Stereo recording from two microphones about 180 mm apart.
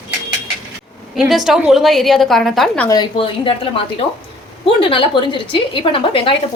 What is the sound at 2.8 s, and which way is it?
A woman's voice, 25° left (ahead or behind).